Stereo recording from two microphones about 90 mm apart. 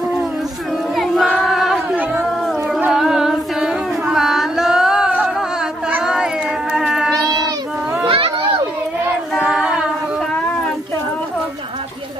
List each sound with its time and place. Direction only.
0.9 s choir: centre (ahead or behind)
2.4 s a sound: centre (ahead or behind)
2.9 s carnatic music: 5° right (ahead or behind)
6.0 s a sound: 10° right (ahead or behind)
8.1 s children playing: 80° right
9.4 s a capella: 10° right (ahead or behind)